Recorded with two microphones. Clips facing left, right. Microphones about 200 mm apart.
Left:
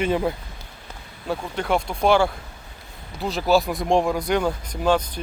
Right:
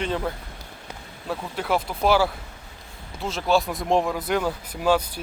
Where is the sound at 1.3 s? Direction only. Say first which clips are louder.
Left 2 dB; 5° right (ahead or behind).